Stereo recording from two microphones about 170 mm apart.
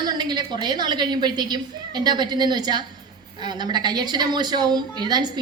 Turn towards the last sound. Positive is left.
turn(degrees=-25)  # may be behind; listen again after turning